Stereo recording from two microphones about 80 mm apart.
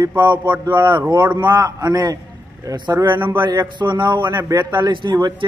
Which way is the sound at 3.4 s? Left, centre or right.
Right.